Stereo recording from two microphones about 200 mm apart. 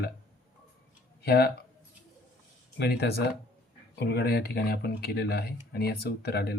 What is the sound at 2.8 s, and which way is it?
Speech, 55° left (ahead or behind).